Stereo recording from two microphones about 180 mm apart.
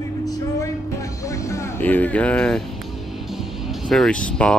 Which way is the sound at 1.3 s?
15° left (ahead or behind).